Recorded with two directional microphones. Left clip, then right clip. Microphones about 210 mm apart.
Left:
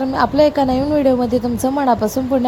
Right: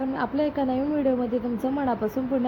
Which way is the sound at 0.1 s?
30° left (ahead or behind).